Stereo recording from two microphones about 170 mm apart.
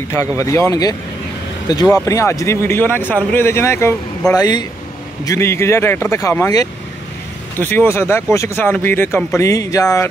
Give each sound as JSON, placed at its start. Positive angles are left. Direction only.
{"t": 0.4, "sound": "speech", "side_deg": 20}